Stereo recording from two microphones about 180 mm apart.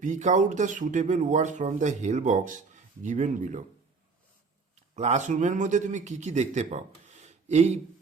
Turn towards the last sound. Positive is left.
turn(degrees=-35)  # may be behind; listen again after turning